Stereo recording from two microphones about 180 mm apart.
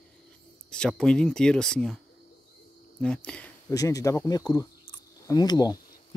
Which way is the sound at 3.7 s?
20° left (ahead or behind).